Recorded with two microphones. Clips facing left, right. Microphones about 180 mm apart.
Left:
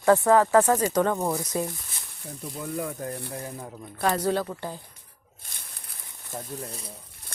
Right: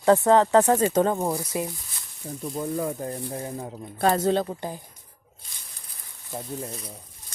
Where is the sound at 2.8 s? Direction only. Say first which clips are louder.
Right 3 dB; 30° right (ahead or behind).